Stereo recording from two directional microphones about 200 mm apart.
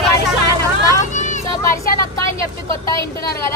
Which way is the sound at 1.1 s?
40° left (ahead or behind).